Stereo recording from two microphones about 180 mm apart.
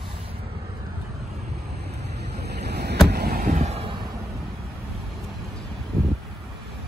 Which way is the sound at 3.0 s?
60° right (ahead or behind).